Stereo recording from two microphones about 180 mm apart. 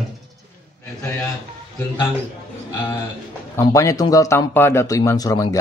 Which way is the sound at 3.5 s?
15° left (ahead or behind).